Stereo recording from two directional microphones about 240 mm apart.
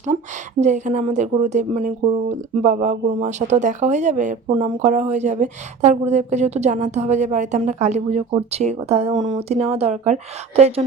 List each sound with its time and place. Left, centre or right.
0.6 s a woman's voice: right